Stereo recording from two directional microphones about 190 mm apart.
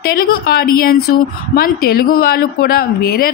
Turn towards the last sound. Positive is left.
turn(degrees=55)  # may be behind; listen again after turning